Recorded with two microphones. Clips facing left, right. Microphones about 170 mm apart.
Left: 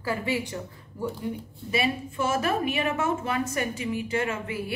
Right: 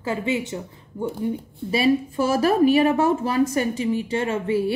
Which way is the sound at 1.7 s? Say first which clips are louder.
Right 8 dB; 35° right (ahead or behind).